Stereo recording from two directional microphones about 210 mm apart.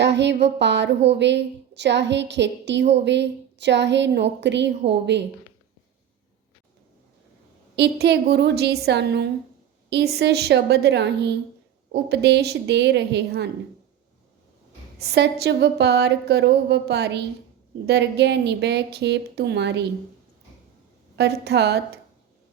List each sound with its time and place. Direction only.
0.0 s a woman's voice: 55° right (ahead or behind)
7.8 s a woman's voice: 50° right (ahead or behind)
14.9 s a woman's voice: 50° right (ahead or behind)
21.2 s a woman's voice: 50° right (ahead or behind)